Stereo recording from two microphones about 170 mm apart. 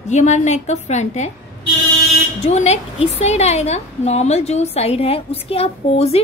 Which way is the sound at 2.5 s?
40° left (ahead or behind).